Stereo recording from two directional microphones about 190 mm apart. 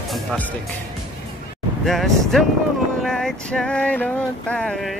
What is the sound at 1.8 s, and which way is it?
Male singing, centre (ahead or behind).